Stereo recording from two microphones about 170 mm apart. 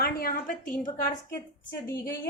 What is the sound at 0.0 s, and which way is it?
A woman's voice, 60° left (ahead or behind).